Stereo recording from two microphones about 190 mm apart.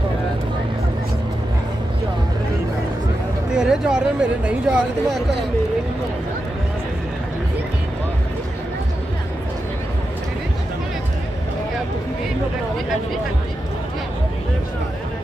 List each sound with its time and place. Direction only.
3.5 s speech: 5° right (ahead or behind)